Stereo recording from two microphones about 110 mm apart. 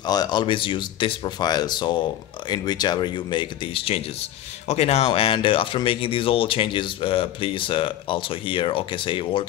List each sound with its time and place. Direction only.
0.0 s speech: 40° left (ahead or behind); by 4.0 s 60° left (ahead or behind)
4.6 s speech: 75° left (ahead or behind); by 9.5 s 50° left (ahead or behind)